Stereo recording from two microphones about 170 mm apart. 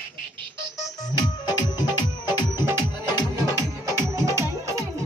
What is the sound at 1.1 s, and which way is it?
Music, 25° left (ahead or behind).